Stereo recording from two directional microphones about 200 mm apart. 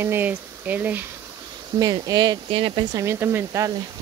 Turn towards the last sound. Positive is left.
turn(degrees=-15)  # may be behind; listen again after turning